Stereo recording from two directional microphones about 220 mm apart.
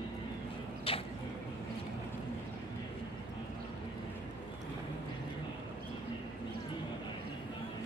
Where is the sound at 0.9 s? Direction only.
25° left (ahead or behind).